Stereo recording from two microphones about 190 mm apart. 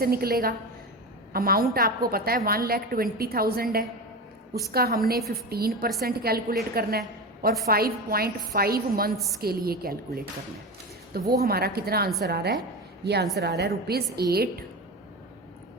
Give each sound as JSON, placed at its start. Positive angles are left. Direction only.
{"t": 0.0, "sound": "a woman's voice", "side_deg": -50}